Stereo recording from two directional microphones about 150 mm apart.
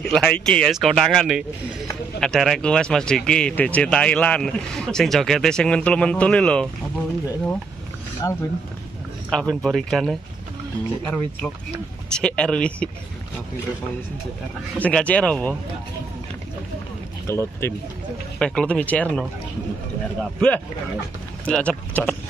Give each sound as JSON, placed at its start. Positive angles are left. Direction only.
{"t": 0.0, "sound": "speech", "side_deg": 5}
{"t": 8.2, "sound": "speech", "side_deg": 20}
{"t": 9.3, "sound": "speech", "side_deg": 5}
{"t": 14.8, "sound": "speech", "side_deg": 10}
{"t": 17.3, "sound": "speech", "side_deg": 20}
{"t": 18.4, "sound": "speech", "side_deg": 5}
{"t": 20.3, "sound": "speech", "side_deg": 5}